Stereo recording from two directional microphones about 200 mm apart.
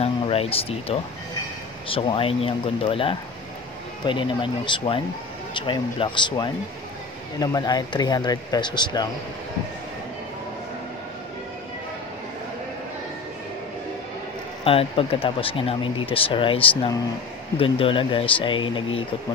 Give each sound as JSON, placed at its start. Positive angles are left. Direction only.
{"t": 0.0, "sound": "speech", "side_deg": 30}
{"t": 14.6, "sound": "speech", "side_deg": 30}